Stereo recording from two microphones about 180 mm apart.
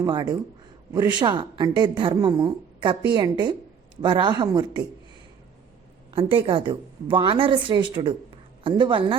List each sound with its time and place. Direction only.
0.0 s a woman's voice: 25° right (ahead or behind)
6.3 s a woman's voice: 30° right (ahead or behind)